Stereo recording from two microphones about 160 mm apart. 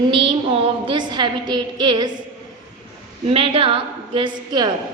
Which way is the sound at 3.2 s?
35° right (ahead or behind).